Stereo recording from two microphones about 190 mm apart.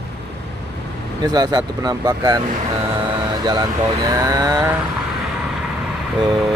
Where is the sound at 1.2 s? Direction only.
20° right (ahead or behind).